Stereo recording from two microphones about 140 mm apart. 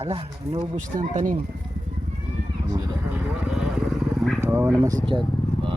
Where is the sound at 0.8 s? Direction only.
65° right (ahead or behind).